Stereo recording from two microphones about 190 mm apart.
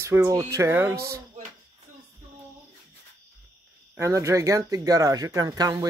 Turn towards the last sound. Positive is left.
turn(degrees=-20)  # may be behind; listen again after turning